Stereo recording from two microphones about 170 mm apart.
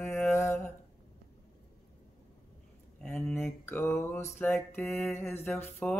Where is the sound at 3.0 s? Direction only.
10° left (ahead or behind).